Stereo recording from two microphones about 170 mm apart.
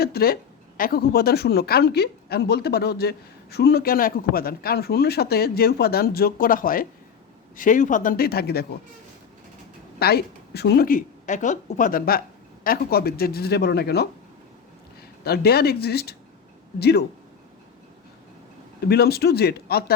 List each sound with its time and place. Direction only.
0.0 s speech: 65° left (ahead or behind)
10.0 s speech: 70° left (ahead or behind)
15.2 s speech: 65° left (ahead or behind)
18.9 s speech: 70° left (ahead or behind)